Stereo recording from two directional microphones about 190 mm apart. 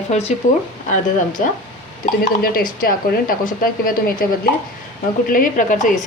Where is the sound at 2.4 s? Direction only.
50° left (ahead or behind).